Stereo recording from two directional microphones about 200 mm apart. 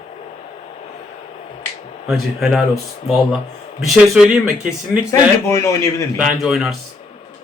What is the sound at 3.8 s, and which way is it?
Speech, centre (ahead or behind).